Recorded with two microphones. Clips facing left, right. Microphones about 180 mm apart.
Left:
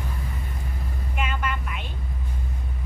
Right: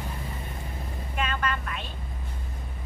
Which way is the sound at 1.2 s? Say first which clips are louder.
Even; 10° left (ahead or behind).